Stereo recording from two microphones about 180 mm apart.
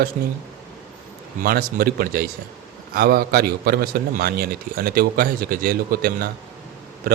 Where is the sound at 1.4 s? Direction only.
55° right (ahead or behind).